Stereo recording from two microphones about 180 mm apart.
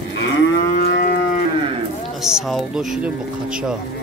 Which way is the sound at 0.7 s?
55° left (ahead or behind).